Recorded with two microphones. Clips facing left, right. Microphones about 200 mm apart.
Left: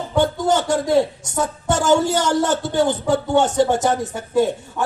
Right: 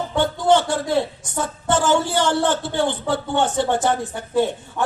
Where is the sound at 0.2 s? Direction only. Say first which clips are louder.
Even; 40° left (ahead or behind).